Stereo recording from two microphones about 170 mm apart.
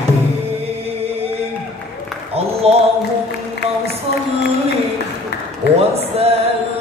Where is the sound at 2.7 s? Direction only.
35° right (ahead or behind).